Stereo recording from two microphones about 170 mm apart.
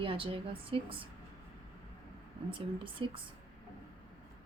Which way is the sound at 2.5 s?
30° right (ahead or behind).